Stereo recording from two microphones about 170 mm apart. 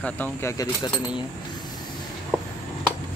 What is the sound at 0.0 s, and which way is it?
Speech, 15° left (ahead or behind).